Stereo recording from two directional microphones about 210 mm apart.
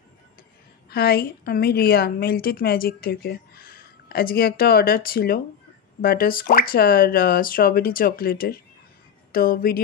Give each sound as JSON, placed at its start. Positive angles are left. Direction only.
{"t": 0.8, "sound": "a woman's voice", "side_deg": 50}